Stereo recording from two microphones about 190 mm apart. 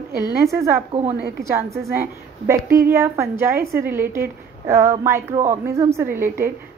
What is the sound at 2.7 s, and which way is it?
A woman's voice, 15° right (ahead or behind).